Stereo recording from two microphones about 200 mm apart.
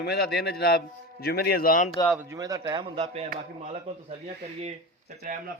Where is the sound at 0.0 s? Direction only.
55° left (ahead or behind).